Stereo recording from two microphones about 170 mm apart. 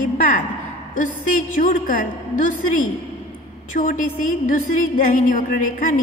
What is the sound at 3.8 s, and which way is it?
A woman's voice, 50° left (ahead or behind).